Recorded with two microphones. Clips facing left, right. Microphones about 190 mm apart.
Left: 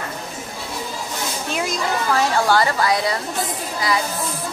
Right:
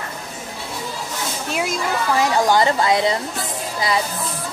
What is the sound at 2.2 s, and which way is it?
A woman's voice, 15° right (ahead or behind).